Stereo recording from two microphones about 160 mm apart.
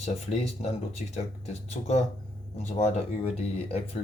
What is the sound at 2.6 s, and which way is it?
Speech, 45° left (ahead or behind).